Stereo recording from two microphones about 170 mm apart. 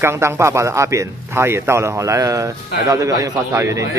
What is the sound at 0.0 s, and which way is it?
A man's voice, 15° right (ahead or behind).